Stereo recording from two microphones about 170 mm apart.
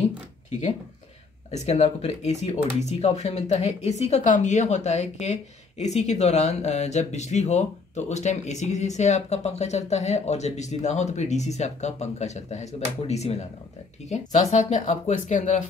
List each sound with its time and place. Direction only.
1.5 s speech: 40° left (ahead or behind)